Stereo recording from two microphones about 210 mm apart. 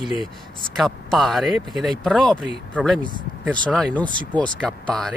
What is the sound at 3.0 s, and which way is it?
Speech, 20° left (ahead or behind).